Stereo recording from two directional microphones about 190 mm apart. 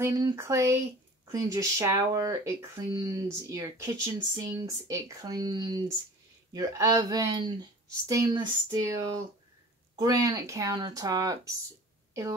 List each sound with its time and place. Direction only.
0.0 s speech: 15° right (ahead or behind)